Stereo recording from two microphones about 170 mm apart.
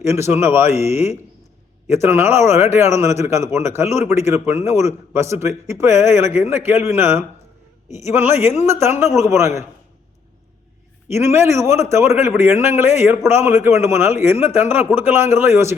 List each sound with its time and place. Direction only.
0.0 s a man's voice: 15° right (ahead or behind)
0.9 s a man's voice: 40° left (ahead or behind)
2.0 s a man's voice: 15° right (ahead or behind)
11.1 s a man's voice: 15° right (ahead or behind)